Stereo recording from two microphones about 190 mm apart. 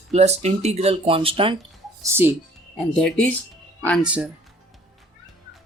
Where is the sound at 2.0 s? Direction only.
10° right (ahead or behind).